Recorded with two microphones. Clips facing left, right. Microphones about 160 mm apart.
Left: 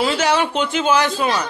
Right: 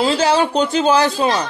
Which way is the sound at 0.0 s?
30° right (ahead or behind).